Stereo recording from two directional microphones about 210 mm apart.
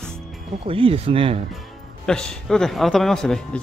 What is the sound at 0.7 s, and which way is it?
Speech, 25° right (ahead or behind).